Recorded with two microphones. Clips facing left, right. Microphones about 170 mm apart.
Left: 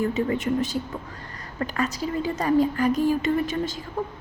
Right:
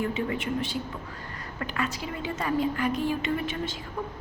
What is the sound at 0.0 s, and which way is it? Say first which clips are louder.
A woman's voice: left 5 dB; 40° left (ahead or behind).